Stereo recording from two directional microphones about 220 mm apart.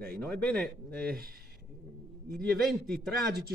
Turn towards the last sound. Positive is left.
turn(degrees=0)  # may be behind; listen again after turning